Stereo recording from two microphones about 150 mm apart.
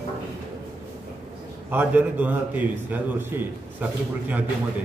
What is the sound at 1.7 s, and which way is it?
A man's voice, 10° right (ahead or behind).